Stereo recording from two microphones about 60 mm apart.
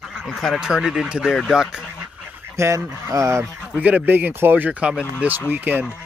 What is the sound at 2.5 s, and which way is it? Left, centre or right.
Speech, right.